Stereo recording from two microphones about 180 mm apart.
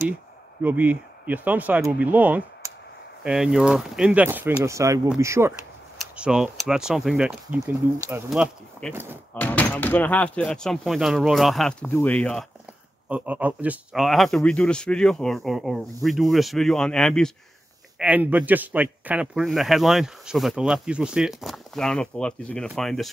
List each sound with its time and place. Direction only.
0.6 s speech: 10° right (ahead or behind)
5.9 s a man's voice: 5° right (ahead or behind)
13.1 s a man's voice: 10° right (ahead or behind)
17.9 s a man's voice: 10° right (ahead or behind)